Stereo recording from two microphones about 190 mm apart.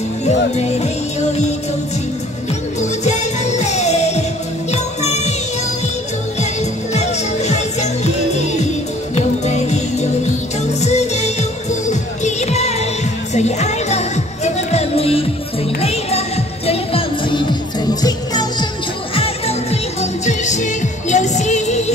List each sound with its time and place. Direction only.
0.2 s speech: 35° left (ahead or behind)
3.0 s music: 35° left (ahead or behind)
6.9 s music: 35° left (ahead or behind); by 18.7 s 20° left (ahead or behind)
19.1 s music: 30° left (ahead or behind)